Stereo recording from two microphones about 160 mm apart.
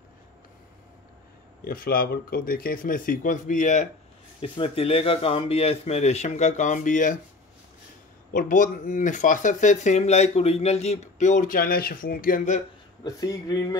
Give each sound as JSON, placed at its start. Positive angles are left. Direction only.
{"t": 1.6, "sound": "speech", "side_deg": 65}
{"t": 4.4, "sound": "speech", "side_deg": 35}
{"t": 8.3, "sound": "speech", "side_deg": 55}
{"t": 13.0, "sound": "speech", "side_deg": 20}